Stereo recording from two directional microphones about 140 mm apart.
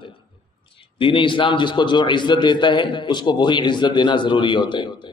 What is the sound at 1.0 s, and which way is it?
A man's voice, 40° left (ahead or behind).